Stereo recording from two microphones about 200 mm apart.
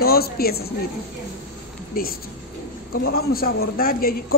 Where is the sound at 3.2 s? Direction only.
50° left (ahead or behind).